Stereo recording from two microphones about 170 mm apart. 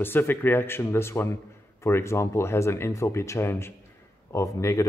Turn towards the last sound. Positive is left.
turn(degrees=15)  # may be behind; listen again after turning